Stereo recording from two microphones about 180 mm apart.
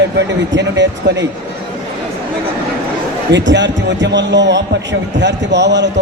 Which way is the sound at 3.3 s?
80° right.